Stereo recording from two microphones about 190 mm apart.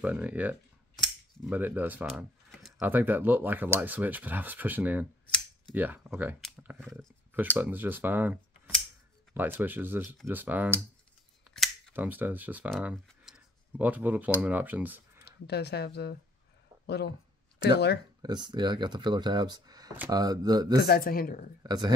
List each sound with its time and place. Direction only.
0.0 s speech: 5° right (ahead or behind)
7.5 s speech: 10° right (ahead or behind)
11.9 s speech: 10° right (ahead or behind)
12.8 s a sound: centre (ahead or behind)
14.4 s speech: 10° right (ahead or behind)
15.2 s speech: 60° left (ahead or behind)
18.2 s speech: 25° right (ahead or behind)
20.8 s speech: 50° left (ahead or behind)
21.6 s speech: 20° right (ahead or behind)